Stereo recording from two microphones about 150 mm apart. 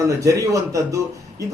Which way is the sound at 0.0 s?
20° right (ahead or behind).